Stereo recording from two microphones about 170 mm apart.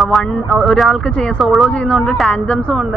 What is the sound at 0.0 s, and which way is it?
Speech, centre (ahead or behind).